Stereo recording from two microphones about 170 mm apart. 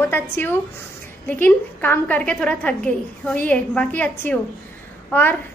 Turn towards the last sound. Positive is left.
turn(degrees=10)  # may be behind; listen again after turning